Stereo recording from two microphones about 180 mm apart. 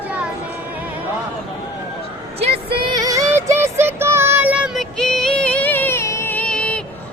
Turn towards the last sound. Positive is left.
turn(degrees=5)  # may be behind; listen again after turning